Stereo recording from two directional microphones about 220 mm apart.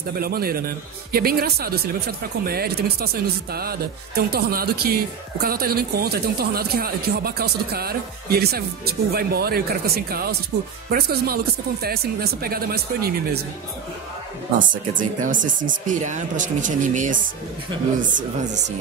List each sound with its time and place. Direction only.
0.2 s speech: 45° right (ahead or behind)
14.7 s speech: 35° right (ahead or behind)